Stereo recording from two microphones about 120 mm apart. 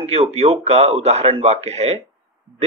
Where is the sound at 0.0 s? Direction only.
60° right (ahead or behind).